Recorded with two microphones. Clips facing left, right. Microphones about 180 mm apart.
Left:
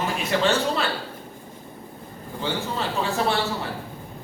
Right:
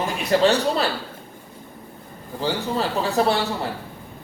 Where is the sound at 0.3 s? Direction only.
35° right (ahead or behind).